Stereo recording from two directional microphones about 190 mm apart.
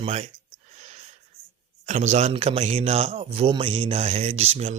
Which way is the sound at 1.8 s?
35° right (ahead or behind).